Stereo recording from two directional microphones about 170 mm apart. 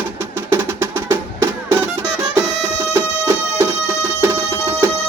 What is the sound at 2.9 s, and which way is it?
Music, 15° right (ahead or behind).